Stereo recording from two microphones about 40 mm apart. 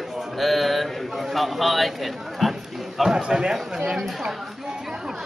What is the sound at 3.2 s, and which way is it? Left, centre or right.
Speech, right.